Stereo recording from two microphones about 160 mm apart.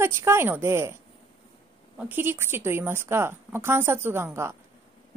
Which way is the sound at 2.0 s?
10° right (ahead or behind).